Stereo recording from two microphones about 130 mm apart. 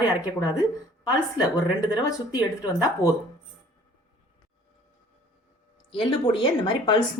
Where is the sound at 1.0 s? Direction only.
30° left (ahead or behind).